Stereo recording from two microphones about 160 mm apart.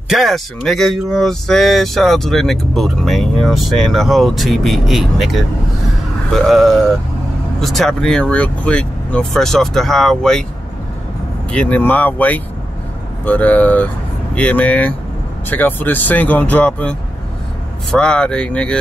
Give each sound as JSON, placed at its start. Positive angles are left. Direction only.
{"t": 0.1, "sound": "speech", "side_deg": 0}
{"t": 11.5, "sound": "speech", "side_deg": 10}
{"t": 17.9, "sound": "speech", "side_deg": 5}